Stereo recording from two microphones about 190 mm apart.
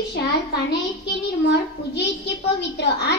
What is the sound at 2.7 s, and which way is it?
Speech, 60° left (ahead or behind).